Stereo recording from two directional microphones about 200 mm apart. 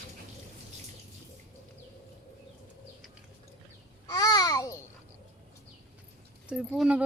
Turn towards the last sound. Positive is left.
turn(degrees=-5)  # may be behind; listen again after turning